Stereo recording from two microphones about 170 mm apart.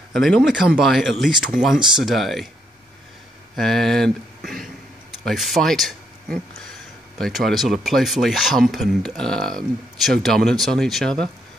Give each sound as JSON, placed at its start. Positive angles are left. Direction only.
{"t": 0.1, "sound": "speech", "side_deg": 0}
{"t": 3.5, "sound": "speech", "side_deg": 0}
{"t": 5.2, "sound": "speech", "side_deg": 0}